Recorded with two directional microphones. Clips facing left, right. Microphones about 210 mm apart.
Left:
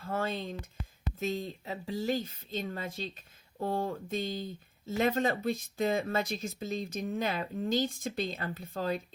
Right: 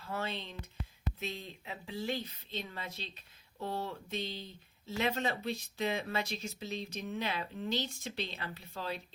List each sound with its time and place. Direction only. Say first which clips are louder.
0.0 s speech: left 5 dB; 50° left (ahead or behind)